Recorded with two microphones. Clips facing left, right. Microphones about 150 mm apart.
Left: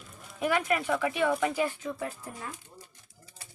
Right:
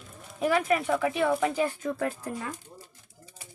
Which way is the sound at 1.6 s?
45° right (ahead or behind).